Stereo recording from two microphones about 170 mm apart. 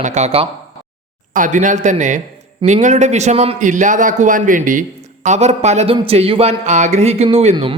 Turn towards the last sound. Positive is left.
turn(degrees=-40)  # may be behind; listen again after turning